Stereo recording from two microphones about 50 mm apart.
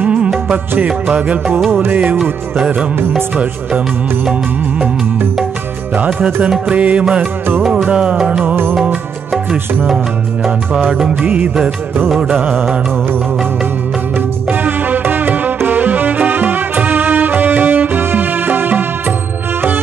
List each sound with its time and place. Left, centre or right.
0.0 s music of bollywood: right
1.1 s music: right
6.7 s music: right
7.6 s music: centre
7.9 s music: centre
10.7 s music: right
11.0 s music: centre
11.2 s music: right
14.1 s music: right